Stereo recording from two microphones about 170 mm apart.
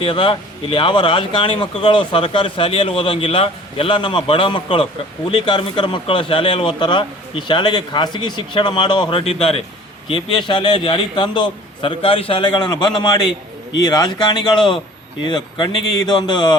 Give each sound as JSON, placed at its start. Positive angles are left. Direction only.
{"t": 0.0, "sound": "a man's voice", "side_deg": 30}